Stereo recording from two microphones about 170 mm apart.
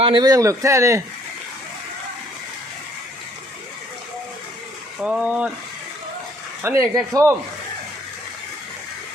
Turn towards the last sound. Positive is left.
turn(degrees=-20)  # may be behind; listen again after turning